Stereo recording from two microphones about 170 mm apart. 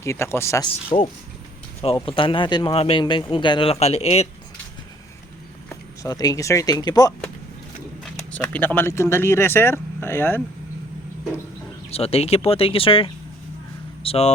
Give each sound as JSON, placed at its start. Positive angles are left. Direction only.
{"t": 0.0, "sound": "speech", "side_deg": 15}
{"t": 2.0, "sound": "speech", "side_deg": 30}
{"t": 6.0, "sound": "speech", "side_deg": 20}
{"t": 8.0, "sound": "speech", "side_deg": 10}
{"t": 11.9, "sound": "speech", "side_deg": 35}